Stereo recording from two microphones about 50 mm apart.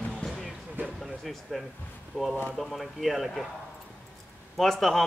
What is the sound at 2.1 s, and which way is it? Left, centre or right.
Speech, centre.